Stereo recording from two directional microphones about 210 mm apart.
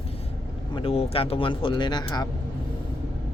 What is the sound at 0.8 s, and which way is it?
Speech, 30° left (ahead or behind).